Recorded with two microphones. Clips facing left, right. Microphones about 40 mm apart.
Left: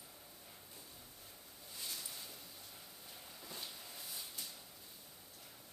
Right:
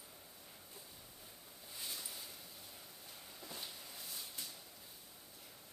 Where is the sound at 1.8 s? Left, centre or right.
Centre.